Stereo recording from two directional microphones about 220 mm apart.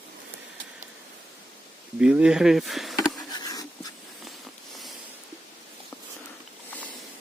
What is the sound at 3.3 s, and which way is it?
Writing, 15° left (ahead or behind).